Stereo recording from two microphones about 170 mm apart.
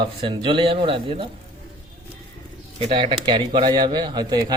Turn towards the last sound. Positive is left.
turn(degrees=-25)  # may be behind; listen again after turning